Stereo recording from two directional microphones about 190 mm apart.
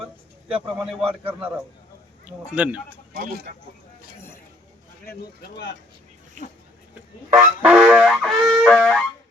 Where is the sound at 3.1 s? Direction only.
50° right (ahead or behind).